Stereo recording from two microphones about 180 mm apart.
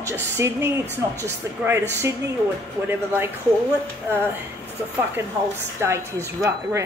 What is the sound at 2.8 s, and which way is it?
Speech, 10° right (ahead or behind).